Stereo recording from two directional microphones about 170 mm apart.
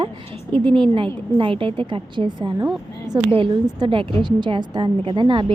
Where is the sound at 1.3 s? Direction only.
30° right (ahead or behind).